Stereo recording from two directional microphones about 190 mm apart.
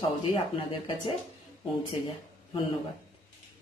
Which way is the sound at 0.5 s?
25° left (ahead or behind).